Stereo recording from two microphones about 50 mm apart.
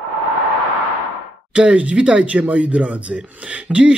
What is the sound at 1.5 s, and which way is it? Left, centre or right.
A man's voice, right.